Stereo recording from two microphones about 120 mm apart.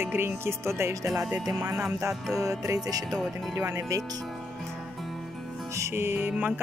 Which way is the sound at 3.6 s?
25° right (ahead or behind).